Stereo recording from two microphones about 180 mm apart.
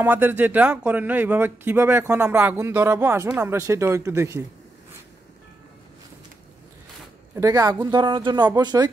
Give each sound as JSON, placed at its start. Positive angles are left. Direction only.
{"t": 0.0, "sound": "speech", "side_deg": -10}
{"t": 7.3, "sound": "speech", "side_deg": -20}